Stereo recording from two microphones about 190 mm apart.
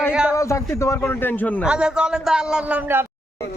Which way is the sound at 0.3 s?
15° left (ahead or behind).